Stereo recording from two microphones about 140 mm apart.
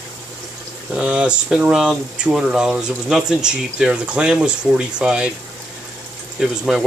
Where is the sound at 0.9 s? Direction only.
10° right (ahead or behind).